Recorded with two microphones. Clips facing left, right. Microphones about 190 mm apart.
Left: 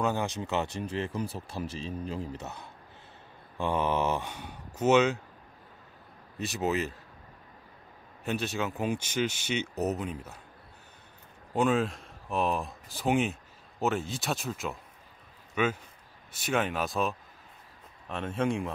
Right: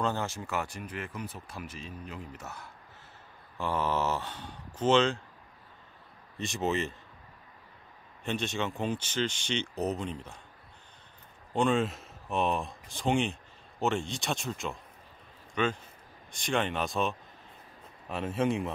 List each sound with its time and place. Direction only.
0.0 s speech: 15° left (ahead or behind)
6.4 s speech: 5° left (ahead or behind)
8.2 s speech: 5° left (ahead or behind)
11.5 s speech: 5° left (ahead or behind)